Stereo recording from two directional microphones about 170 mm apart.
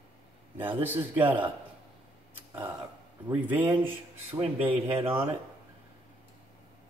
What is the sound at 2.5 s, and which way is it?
A man's voice, 20° right (ahead or behind).